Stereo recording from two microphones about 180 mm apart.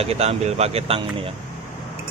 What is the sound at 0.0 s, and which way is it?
Speech, 35° right (ahead or behind).